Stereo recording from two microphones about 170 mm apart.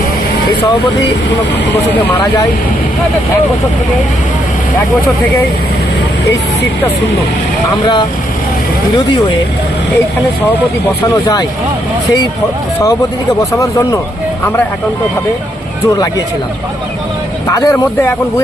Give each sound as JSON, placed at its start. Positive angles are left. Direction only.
{"t": 13.6, "sound": "speech", "side_deg": 20}
{"t": 17.5, "sound": "speech", "side_deg": 20}